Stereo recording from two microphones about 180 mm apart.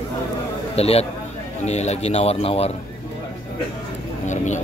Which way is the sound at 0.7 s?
35° left (ahead or behind).